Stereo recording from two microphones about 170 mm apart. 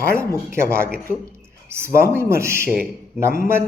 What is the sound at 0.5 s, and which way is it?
Speech, 15° right (ahead or behind).